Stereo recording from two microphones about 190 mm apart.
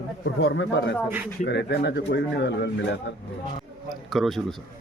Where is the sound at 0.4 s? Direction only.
65° left (ahead or behind).